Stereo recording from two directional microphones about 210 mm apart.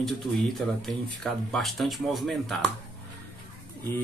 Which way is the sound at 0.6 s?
Centre (ahead or behind).